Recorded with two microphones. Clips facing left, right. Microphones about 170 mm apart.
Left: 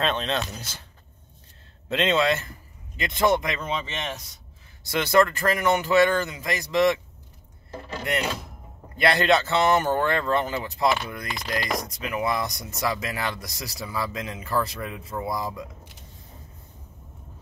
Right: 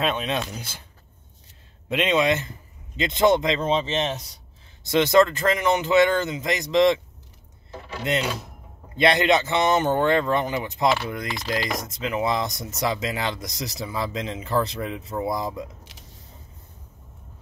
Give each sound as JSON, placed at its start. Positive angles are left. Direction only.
{"t": 0.0, "sound": "speech", "side_deg": -10}
{"t": 1.9, "sound": "speech", "side_deg": -15}
{"t": 8.1, "sound": "speech", "side_deg": -20}